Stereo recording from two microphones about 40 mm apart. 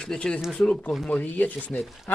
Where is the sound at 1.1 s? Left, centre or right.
Left.